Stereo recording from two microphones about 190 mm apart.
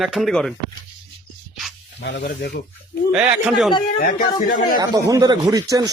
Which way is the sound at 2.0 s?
65° left (ahead or behind).